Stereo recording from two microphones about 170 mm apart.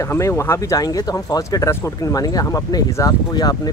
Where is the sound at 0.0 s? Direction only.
15° left (ahead or behind).